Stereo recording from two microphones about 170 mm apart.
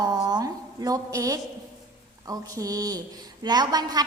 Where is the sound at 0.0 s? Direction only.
25° right (ahead or behind).